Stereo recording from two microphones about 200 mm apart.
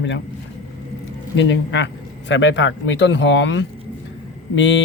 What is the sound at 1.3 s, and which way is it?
Speech, 65° left (ahead or behind).